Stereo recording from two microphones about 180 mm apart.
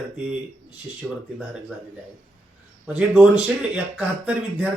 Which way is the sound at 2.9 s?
5° right (ahead or behind).